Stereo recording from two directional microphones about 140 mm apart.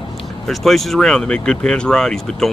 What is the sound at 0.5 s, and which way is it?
Speech, centre (ahead or behind).